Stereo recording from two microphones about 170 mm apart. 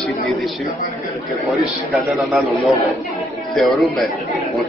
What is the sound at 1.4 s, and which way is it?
A man's voice, centre (ahead or behind).